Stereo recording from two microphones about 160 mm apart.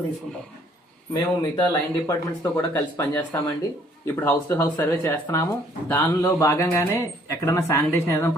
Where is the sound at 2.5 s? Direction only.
15° left (ahead or behind).